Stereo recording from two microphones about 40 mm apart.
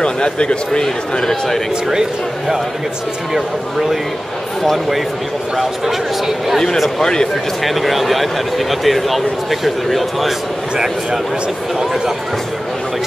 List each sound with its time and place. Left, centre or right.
0.0 s speech: left
3.3 s speech: centre
7.0 s speech: centre
7.6 s speech: centre